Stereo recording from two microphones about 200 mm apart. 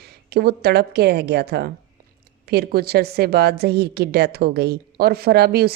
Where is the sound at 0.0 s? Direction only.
55° right (ahead or behind).